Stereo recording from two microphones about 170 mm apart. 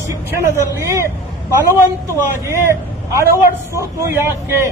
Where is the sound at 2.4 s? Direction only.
15° right (ahead or behind).